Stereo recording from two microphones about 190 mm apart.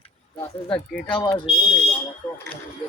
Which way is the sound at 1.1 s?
20° left (ahead or behind).